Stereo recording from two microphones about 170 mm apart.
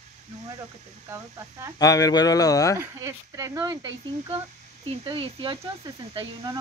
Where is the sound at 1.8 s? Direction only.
20° left (ahead or behind).